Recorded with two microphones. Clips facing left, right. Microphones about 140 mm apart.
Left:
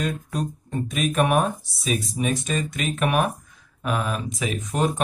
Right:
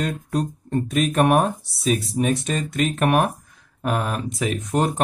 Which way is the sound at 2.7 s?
55° right (ahead or behind).